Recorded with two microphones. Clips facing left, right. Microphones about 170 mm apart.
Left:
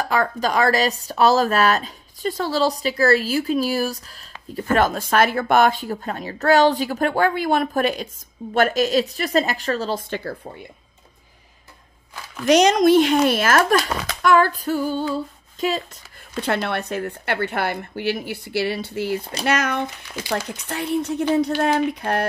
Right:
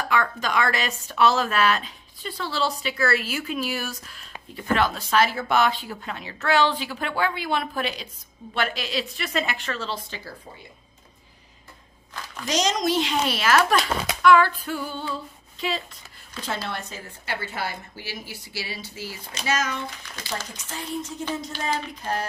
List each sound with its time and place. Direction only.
0.0 s speech: 35° left (ahead or behind); by 10.3 s 55° left (ahead or behind)
12.4 s speech: 60° left (ahead or behind); by 15.7 s 45° left (ahead or behind)
16.3 s a woman's voice: 65° left (ahead or behind)